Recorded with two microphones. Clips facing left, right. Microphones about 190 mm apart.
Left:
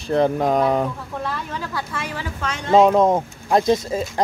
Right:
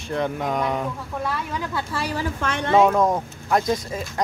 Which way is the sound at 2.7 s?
20° left (ahead or behind).